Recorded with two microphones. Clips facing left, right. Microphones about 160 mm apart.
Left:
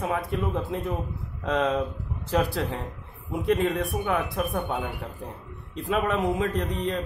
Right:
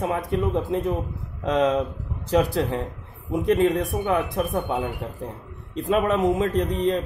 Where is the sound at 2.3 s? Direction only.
45° right (ahead or behind).